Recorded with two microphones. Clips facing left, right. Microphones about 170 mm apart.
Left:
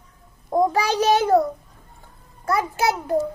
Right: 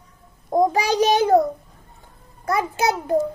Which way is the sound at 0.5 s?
15° right (ahead or behind).